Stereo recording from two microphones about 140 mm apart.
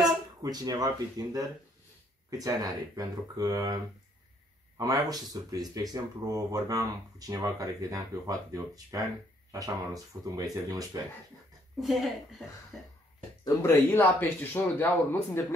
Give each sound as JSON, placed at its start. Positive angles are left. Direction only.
{"t": 0.4, "sound": "speech", "side_deg": -25}
{"t": 11.8, "sound": "speech", "side_deg": 0}
{"t": 13.6, "sound": "speech", "side_deg": 15}